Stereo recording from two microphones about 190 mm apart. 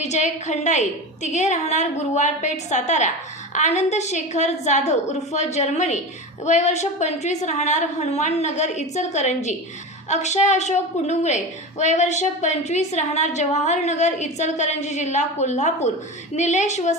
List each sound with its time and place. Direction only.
0.0 s a woman's voice: 35° left (ahead or behind)